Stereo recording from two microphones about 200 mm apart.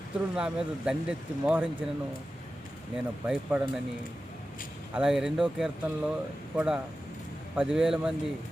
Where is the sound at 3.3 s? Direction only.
5° right (ahead or behind).